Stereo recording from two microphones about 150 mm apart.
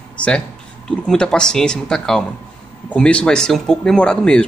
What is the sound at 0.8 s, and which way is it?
Speech, 5° left (ahead or behind).